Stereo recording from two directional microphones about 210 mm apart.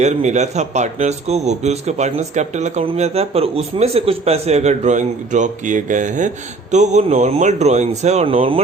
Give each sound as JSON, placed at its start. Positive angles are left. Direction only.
{"t": 0.0, "sound": "a man's voice", "side_deg": -35}